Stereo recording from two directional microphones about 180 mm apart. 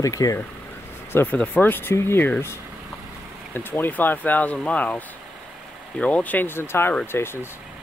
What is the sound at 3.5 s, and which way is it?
Speech, 10° left (ahead or behind).